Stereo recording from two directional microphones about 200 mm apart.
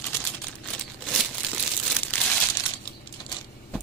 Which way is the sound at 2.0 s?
5° left (ahead or behind).